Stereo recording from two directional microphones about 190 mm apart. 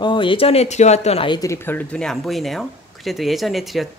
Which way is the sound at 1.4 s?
15° left (ahead or behind).